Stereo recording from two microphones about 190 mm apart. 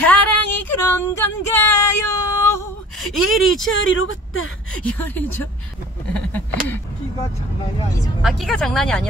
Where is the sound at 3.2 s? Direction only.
90° left.